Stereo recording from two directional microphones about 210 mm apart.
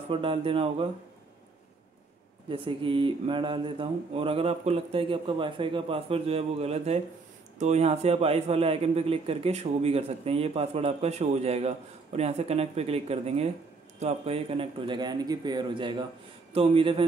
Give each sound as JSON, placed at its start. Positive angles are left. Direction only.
{"t": 0.1, "sound": "a man's voice", "side_deg": -25}
{"t": 2.5, "sound": "a man's voice", "side_deg": -25}